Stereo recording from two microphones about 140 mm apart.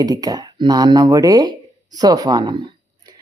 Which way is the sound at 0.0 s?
25° right (ahead or behind).